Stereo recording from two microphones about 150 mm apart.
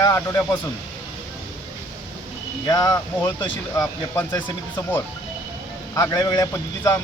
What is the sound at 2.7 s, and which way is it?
Speech, 25° left (ahead or behind).